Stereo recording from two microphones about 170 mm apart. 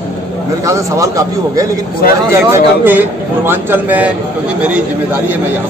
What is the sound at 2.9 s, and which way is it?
Speech, 10° right (ahead or behind).